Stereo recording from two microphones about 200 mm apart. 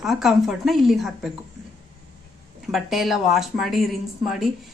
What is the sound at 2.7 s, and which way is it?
A woman's voice, centre (ahead or behind).